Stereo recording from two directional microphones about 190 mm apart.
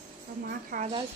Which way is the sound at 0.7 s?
55° right (ahead or behind).